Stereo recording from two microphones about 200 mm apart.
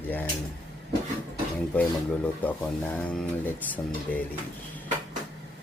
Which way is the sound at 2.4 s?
10° left (ahead or behind).